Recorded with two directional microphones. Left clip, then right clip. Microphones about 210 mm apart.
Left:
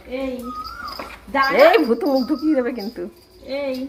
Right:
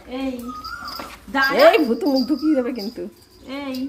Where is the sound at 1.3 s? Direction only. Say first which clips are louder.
Left 1 dB; 15° right (ahead or behind).